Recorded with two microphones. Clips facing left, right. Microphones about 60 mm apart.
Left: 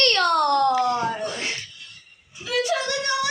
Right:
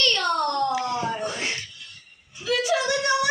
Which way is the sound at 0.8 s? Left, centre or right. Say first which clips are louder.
Left 4 dB; centre.